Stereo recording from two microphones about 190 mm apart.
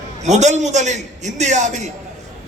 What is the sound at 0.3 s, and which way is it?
A man's voice, 35° right (ahead or behind).